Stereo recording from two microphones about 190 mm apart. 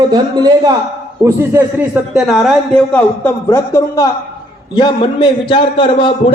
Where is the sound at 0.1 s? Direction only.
20° right (ahead or behind).